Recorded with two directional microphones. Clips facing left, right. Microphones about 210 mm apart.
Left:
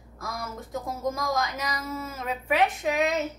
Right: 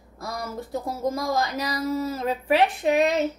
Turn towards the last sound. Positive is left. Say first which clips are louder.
# right 5 dB
turn(degrees=-35)  # may be behind; listen again after turning